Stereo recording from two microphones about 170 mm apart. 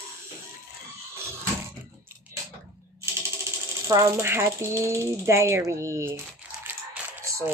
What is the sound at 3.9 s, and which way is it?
Speech, 20° right (ahead or behind).